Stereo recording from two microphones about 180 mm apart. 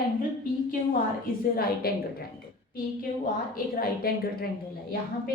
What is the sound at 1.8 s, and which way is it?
Speech, 55° left (ahead or behind).